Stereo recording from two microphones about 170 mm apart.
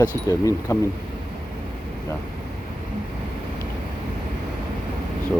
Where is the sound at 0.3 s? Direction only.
20° left (ahead or behind).